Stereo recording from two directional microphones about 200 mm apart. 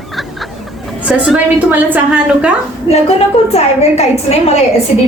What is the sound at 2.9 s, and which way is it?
A woman's voice, 30° left (ahead or behind).